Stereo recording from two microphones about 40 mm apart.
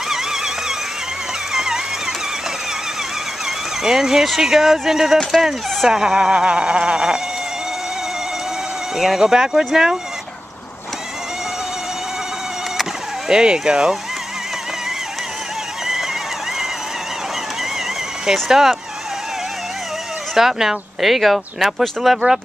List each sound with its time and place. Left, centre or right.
0.1 s a sound: centre
1.5 s music: centre
3.4 s speech: centre
5.9 s speech: centre
8.9 s speech: centre
13.3 s speech: right
18.5 s speech: centre
20.3 s speech: centre